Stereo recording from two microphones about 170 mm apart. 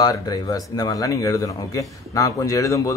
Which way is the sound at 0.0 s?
25° left (ahead or behind).